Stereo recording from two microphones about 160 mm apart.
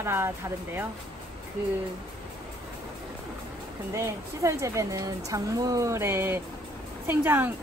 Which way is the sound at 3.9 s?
20° right (ahead or behind).